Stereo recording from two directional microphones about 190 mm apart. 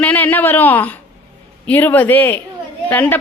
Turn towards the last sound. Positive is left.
turn(degrees=10)  # may be behind; listen again after turning